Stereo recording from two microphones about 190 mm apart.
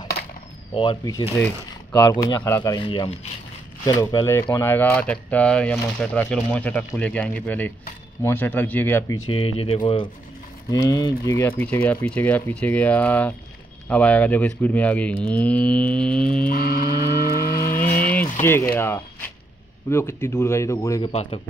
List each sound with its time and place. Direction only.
0.7 s speech: 25° left (ahead or behind)
2.2 s speech: 20° left (ahead or behind)
9.3 s speech: 30° left (ahead or behind); by 16.4 s 5° left (ahead or behind)
16.4 s vehicle: 50° left (ahead or behind)
18.4 s speech: 10° left (ahead or behind)
21.1 s speech: 35° left (ahead or behind)